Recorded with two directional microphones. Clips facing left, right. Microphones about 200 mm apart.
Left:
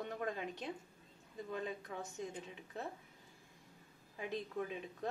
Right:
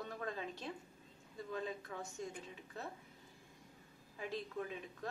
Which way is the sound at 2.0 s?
20° left (ahead or behind).